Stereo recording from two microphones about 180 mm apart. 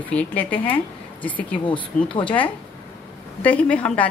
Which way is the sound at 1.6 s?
30° left (ahead or behind).